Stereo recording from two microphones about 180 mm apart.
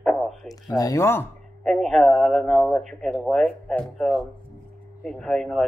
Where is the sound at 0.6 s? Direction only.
20° left (ahead or behind).